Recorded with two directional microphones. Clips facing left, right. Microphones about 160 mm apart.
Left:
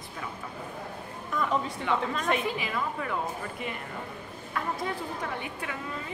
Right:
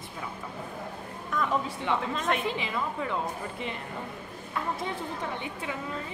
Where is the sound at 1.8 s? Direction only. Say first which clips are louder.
Left 1 dB; 25° right (ahead or behind).